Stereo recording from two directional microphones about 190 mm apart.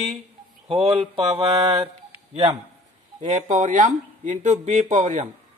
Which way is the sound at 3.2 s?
40° right (ahead or behind).